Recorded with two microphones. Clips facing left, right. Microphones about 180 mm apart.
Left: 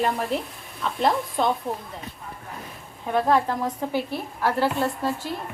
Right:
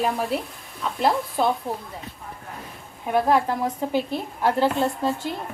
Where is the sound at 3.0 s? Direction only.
10° right (ahead or behind).